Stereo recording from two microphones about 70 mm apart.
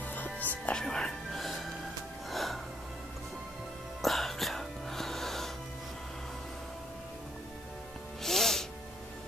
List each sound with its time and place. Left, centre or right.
0.0 s music: left
0.7 s music: centre
4.0 s music: centre
8.2 s music: centre